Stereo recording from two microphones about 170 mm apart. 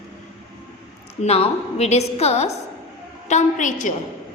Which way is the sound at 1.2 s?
35° left (ahead or behind).